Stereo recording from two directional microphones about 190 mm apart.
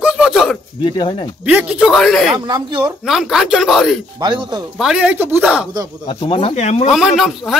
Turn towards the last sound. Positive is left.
turn(degrees=0)  # may be behind; listen again after turning